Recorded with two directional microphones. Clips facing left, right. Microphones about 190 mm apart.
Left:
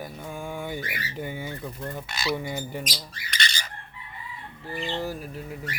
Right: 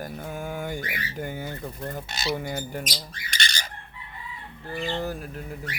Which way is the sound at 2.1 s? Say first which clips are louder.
Left 1 dB; 25° right (ahead or behind).